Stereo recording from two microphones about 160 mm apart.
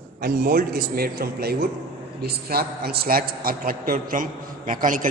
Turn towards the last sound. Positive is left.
turn(degrees=-55)  # may be behind; listen again after turning